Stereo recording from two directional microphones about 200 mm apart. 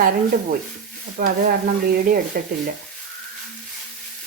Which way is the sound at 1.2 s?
50° right (ahead or behind).